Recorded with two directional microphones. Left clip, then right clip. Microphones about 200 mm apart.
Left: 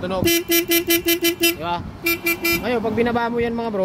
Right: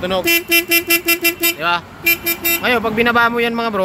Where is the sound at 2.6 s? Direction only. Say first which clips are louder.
Right 6 dB; 5° left (ahead or behind).